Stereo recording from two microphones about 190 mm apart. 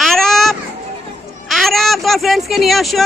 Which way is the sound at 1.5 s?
Centre (ahead or behind).